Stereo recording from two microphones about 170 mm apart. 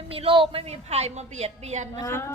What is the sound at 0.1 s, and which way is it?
A woman's voice, 30° right (ahead or behind).